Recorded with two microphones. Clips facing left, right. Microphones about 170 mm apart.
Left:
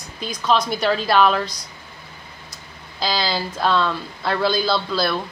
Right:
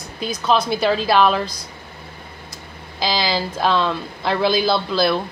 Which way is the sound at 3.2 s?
5° right (ahead or behind).